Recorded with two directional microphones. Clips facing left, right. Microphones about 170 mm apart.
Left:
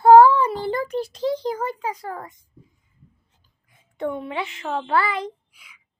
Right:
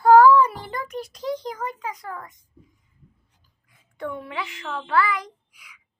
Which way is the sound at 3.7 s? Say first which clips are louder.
Left 5 dB; 25° left (ahead or behind).